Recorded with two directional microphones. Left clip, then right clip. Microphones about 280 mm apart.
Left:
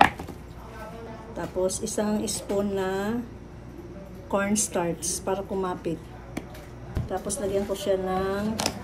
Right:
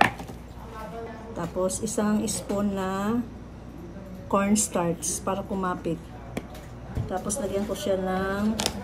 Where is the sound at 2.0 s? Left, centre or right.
Right.